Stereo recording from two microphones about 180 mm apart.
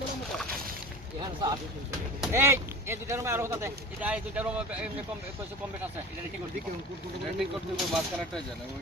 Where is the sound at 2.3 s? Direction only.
15° right (ahead or behind).